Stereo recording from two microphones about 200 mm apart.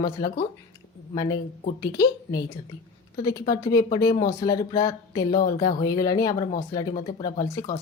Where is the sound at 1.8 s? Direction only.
15° left (ahead or behind).